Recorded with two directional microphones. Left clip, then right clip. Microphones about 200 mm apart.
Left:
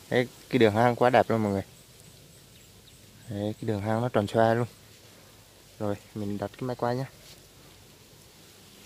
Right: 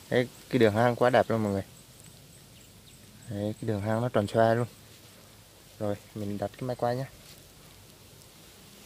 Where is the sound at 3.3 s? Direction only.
10° left (ahead or behind).